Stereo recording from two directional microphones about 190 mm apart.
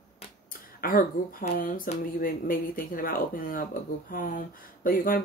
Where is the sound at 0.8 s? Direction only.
50° left (ahead or behind).